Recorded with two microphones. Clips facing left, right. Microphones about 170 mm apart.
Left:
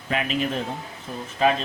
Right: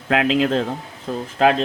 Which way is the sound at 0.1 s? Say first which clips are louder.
Right 8 dB; 90° right.